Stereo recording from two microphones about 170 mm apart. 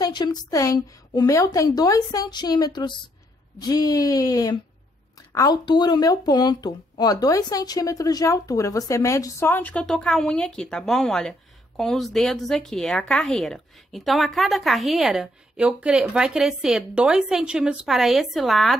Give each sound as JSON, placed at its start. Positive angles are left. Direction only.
{"t": 0.0, "sound": "a woman's voice", "side_deg": 25}